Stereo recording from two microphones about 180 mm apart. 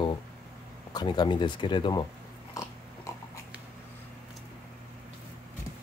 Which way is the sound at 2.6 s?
15° left (ahead or behind).